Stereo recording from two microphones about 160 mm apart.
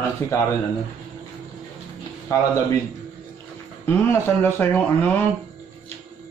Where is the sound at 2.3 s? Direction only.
20° left (ahead or behind).